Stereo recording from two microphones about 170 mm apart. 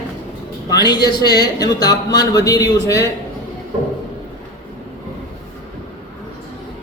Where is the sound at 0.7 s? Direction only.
25° left (ahead or behind).